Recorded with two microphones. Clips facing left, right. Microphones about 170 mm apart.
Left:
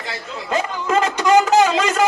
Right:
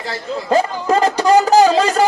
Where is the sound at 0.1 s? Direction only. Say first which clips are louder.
Right 7 dB; 35° right (ahead or behind).